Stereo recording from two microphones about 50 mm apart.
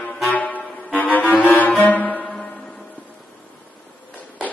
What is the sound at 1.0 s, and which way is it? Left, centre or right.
Saxophone, left.